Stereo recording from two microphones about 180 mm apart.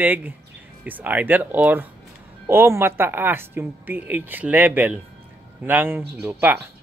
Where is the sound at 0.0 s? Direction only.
10° right (ahead or behind).